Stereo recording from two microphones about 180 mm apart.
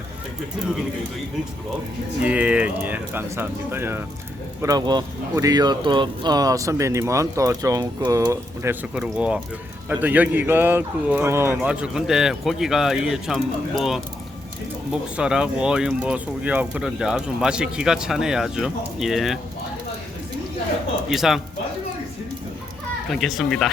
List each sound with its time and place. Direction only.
2.2 s speech: 5° right (ahead or behind)
15.1 s speech: 5° right (ahead or behind)
21.1 s speech: centre (ahead or behind)
23.0 s speech: centre (ahead or behind)